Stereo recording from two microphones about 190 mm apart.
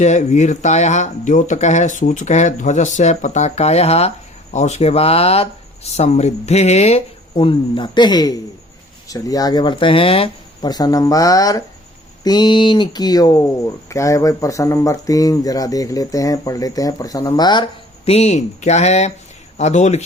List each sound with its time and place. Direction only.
0.0 s speech: 40° left (ahead or behind)